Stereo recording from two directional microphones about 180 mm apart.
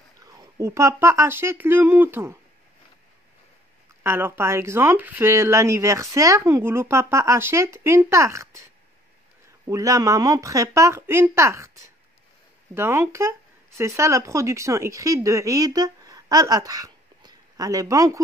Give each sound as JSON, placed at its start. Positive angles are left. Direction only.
{"t": 0.2, "sound": "speech", "side_deg": -20}
{"t": 4.0, "sound": "speech", "side_deg": -15}
{"t": 9.7, "sound": "speech", "side_deg": -20}